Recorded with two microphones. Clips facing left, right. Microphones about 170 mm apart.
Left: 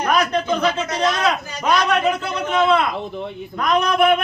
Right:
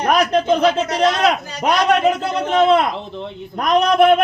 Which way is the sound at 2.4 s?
35° right (ahead or behind).